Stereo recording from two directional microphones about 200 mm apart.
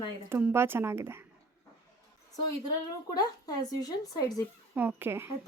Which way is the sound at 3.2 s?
20° left (ahead or behind).